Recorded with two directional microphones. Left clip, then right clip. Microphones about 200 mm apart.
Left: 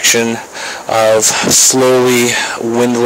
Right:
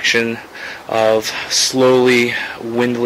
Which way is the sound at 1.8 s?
25° left (ahead or behind).